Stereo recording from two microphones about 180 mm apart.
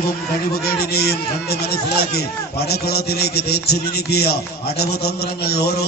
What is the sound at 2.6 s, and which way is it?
A man's voice, 60° left (ahead or behind).